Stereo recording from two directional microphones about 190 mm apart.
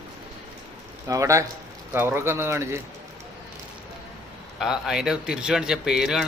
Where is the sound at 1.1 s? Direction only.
15° right (ahead or behind).